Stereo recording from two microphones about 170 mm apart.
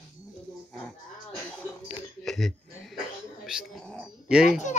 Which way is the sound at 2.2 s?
Centre (ahead or behind).